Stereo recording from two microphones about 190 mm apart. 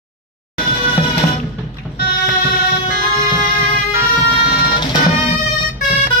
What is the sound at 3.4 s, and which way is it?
Music, 35° left (ahead or behind).